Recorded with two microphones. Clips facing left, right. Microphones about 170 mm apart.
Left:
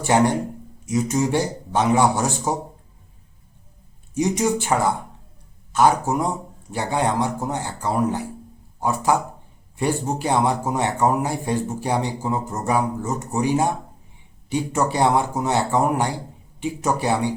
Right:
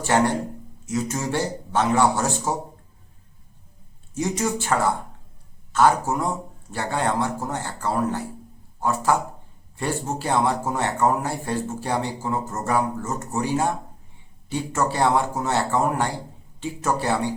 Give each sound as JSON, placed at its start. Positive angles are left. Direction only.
{"t": 0.0, "sound": "a man's voice", "side_deg": 15}
{"t": 4.1, "sound": "a man's voice", "side_deg": 15}